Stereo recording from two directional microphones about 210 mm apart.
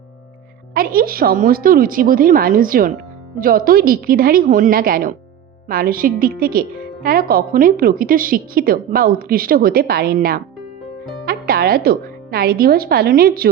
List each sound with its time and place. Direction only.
0.7 s a woman's voice: 45° right (ahead or behind)